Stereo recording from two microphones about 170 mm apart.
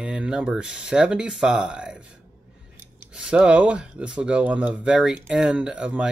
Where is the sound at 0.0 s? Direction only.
5° right (ahead or behind).